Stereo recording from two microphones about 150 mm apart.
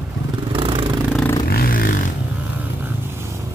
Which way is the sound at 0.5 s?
35° right (ahead or behind).